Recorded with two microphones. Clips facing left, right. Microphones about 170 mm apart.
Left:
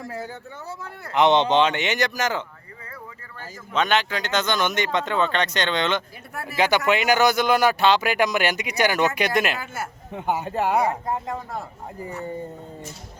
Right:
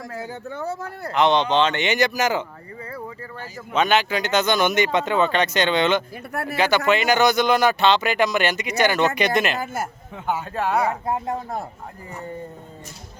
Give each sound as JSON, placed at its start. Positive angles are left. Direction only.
{"t": 0.5, "sound": "speech", "side_deg": -50}
{"t": 1.1, "sound": "speech", "side_deg": 20}
{"t": 3.8, "sound": "speech", "side_deg": -5}
{"t": 6.3, "sound": "speech", "side_deg": -65}
{"t": 6.6, "sound": "speech", "side_deg": 15}